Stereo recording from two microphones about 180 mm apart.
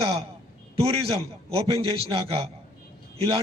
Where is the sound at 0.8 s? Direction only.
35° right (ahead or behind).